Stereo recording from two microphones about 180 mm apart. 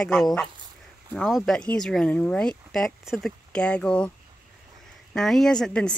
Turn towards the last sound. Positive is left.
turn(degrees=5)  # may be behind; listen again after turning